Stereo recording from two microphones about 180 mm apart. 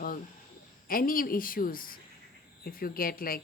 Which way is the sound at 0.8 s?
50° left (ahead or behind).